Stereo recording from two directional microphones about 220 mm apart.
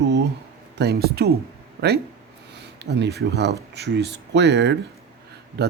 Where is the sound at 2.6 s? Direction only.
50° right (ahead or behind).